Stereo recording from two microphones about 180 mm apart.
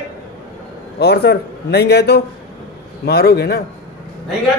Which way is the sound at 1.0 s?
65° left (ahead or behind).